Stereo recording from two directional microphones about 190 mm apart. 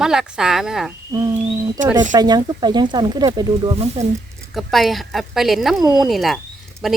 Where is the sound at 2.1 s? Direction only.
20° right (ahead or behind).